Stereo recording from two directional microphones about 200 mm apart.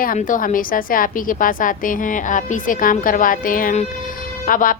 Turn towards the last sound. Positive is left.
turn(degrees=45)  # may be behind; listen again after turning